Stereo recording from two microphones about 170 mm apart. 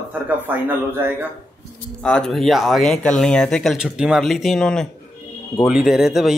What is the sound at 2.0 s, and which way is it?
A man's voice, 5° left (ahead or behind).